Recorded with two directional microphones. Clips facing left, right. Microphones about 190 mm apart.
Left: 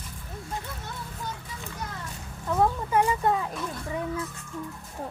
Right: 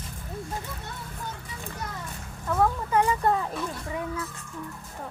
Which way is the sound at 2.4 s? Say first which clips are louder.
Even; 15° left (ahead or behind).